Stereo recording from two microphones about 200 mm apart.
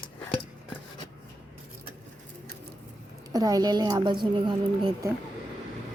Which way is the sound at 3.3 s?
20° right (ahead or behind).